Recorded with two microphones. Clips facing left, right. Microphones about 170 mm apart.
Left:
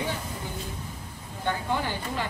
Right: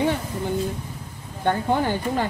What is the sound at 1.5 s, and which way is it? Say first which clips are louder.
Speech: right 7 dB; 50° right (ahead or behind).